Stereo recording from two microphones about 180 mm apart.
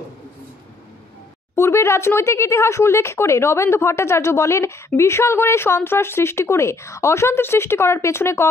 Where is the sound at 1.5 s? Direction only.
15° left (ahead or behind).